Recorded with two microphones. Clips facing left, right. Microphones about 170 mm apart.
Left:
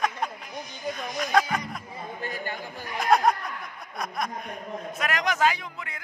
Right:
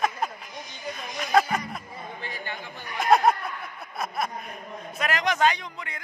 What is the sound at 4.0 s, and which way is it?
A man's voice, 5° right (ahead or behind).